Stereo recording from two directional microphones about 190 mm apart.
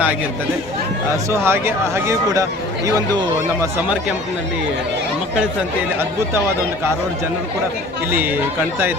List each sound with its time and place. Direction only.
1.1 s speech: 15° right (ahead or behind)
8.1 s speech: 10° right (ahead or behind)